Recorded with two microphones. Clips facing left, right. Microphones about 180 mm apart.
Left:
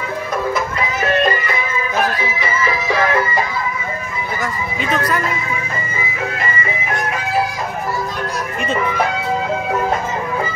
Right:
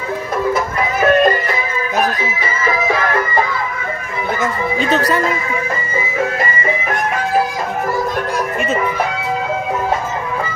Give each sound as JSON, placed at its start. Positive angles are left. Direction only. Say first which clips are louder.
{"t": 0.7, "sound": "music", "louder": "right 8 dB", "side_deg": -45}